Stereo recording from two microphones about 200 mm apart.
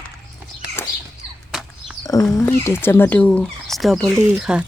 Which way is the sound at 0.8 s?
10° left (ahead or behind).